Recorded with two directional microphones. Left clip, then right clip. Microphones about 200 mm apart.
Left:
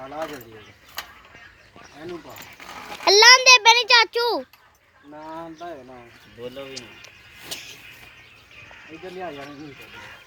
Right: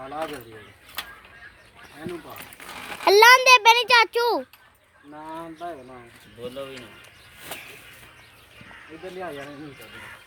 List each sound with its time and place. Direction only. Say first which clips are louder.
0.0 s speech: even; 10° left (ahead or behind)
2.0 s a child's voice: even; centre (ahead or behind)
5.1 s speech: left 1 dB; 15° left (ahead or behind)